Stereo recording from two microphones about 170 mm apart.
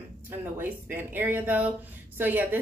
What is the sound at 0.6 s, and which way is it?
A woman's voice, 10° right (ahead or behind).